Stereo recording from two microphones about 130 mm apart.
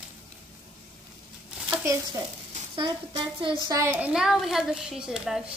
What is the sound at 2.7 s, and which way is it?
Speech, 40° right (ahead or behind).